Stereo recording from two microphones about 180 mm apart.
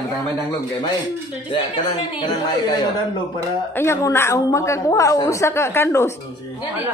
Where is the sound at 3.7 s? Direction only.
15° left (ahead or behind).